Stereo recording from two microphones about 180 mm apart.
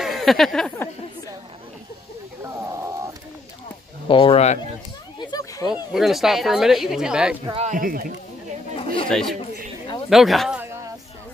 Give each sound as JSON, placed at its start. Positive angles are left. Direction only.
{"t": 0.0, "sound": "speech", "side_deg": 0}
{"t": 4.1, "sound": "speech", "side_deg": 30}
{"t": 5.2, "sound": "a sound", "side_deg": 20}
{"t": 5.7, "sound": "speech", "side_deg": 0}
{"t": 7.5, "sound": "speech", "side_deg": -45}
{"t": 8.7, "sound": "chatter", "side_deg": 30}
{"t": 9.1, "sound": "speech", "side_deg": 0}